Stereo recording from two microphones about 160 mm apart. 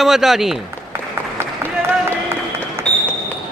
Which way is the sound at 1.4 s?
15° right (ahead or behind).